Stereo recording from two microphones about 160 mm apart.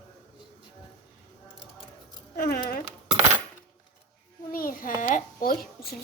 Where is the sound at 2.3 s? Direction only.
75° left (ahead or behind).